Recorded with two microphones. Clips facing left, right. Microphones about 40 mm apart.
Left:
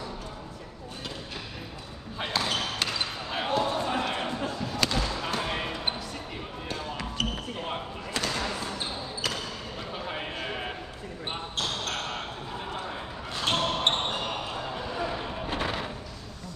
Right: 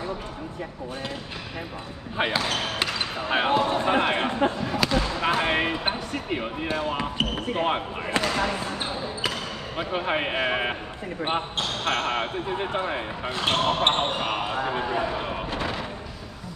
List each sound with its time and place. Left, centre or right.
2.2 s basketball bounce: right
3.6 s a sound: right
4.8 s basketball bounce: centre
5.4 s basketball bounce: right
6.1 s speech: right
7.3 s basketball bounce: right
8.3 s speech: right
9.8 s speech: right
13.3 s speech: right
15.6 s music: centre